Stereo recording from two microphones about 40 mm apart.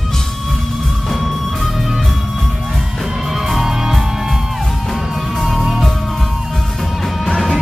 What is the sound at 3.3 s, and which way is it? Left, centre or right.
Music, centre.